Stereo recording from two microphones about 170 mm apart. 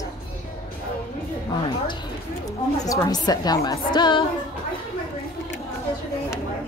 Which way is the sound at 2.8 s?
20° left (ahead or behind).